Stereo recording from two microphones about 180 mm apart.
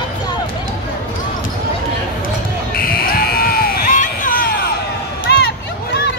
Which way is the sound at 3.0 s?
55° left (ahead or behind).